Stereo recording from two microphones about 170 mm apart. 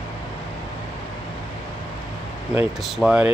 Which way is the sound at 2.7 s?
5° right (ahead or behind).